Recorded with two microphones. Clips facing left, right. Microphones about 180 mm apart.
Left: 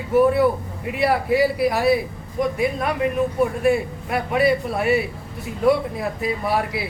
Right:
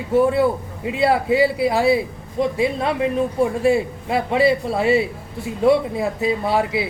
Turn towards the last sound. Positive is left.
turn(degrees=-25)  # may be behind; listen again after turning